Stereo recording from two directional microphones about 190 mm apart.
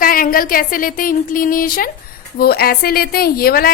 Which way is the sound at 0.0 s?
50° left (ahead or behind).